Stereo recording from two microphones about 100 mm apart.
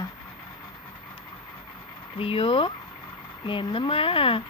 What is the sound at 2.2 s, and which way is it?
Speech, 65° left (ahead or behind).